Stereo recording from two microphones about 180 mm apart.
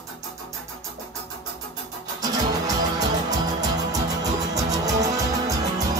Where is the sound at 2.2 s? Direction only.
20° right (ahead or behind).